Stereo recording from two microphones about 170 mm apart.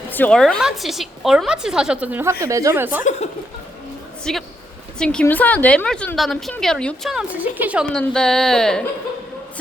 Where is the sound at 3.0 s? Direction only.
40° left (ahead or behind).